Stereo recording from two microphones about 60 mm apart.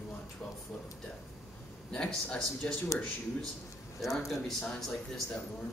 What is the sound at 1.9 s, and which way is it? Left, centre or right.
Speech, centre.